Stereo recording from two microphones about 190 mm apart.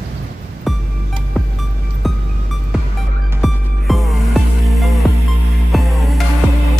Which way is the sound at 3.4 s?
Centre (ahead or behind).